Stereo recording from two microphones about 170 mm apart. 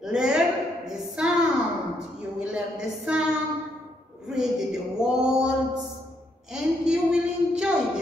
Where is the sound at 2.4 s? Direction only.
5° right (ahead or behind).